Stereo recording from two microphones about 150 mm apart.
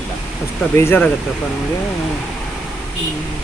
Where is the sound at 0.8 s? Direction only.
15° left (ahead or behind).